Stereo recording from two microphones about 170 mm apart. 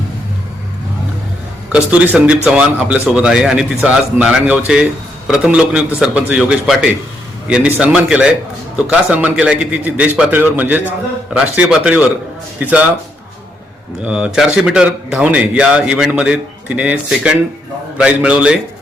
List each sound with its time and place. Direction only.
1.7 s a man's voice: 10° right (ahead or behind)
14.0 s speech: 5° right (ahead or behind)